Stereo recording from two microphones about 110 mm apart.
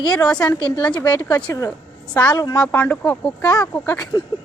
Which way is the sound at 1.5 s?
30° left (ahead or behind).